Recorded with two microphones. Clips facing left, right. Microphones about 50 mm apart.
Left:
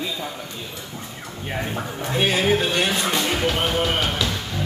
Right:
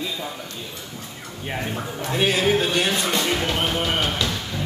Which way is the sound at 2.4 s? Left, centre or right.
Centre.